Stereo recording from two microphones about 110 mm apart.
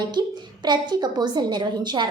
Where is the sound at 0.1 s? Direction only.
40° right (ahead or behind).